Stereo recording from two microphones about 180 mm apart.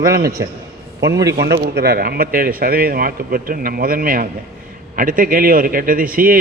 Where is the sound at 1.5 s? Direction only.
60° right (ahead or behind).